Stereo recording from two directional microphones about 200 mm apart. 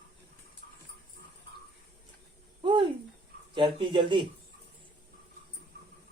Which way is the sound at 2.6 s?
25° right (ahead or behind).